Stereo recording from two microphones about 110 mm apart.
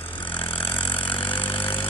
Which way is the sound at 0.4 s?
55° left (ahead or behind).